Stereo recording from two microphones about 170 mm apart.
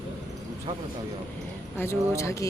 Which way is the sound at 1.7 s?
15° left (ahead or behind).